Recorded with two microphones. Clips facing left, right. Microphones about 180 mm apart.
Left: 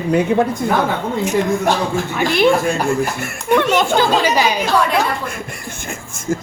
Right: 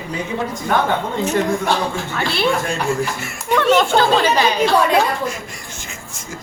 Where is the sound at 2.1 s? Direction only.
15° left (ahead or behind).